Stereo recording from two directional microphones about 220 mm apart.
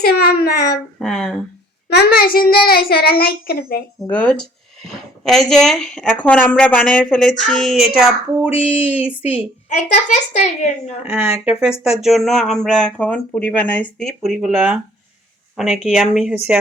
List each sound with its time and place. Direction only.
0.0 s a child's voice: 45° left (ahead or behind)
0.9 s speech: centre (ahead or behind)
1.9 s a child's voice: 45° left (ahead or behind)
4.1 s speech: 5° left (ahead or behind)
8.4 s a sound: 25° left (ahead or behind)
8.9 s a sound: 5° right (ahead or behind)
9.6 s a woman's voice: 35° left (ahead or behind)
12.0 s speech: centre (ahead or behind)